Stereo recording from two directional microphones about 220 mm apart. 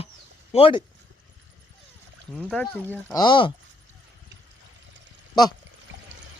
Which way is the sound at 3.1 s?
20° left (ahead or behind).